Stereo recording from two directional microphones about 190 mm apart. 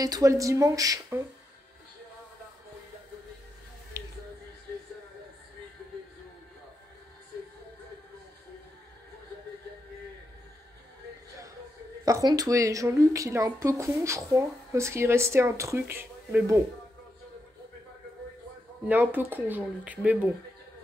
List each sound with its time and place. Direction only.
0.0 s speech: 15° right (ahead or behind)
12.0 s speech: 20° right (ahead or behind)
18.9 s speech: 10° right (ahead or behind)